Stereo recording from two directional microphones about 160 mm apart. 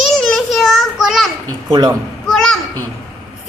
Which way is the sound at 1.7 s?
25° right (ahead or behind).